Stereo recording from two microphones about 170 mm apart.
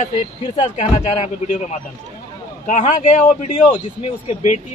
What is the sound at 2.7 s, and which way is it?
Speech, 45° left (ahead or behind).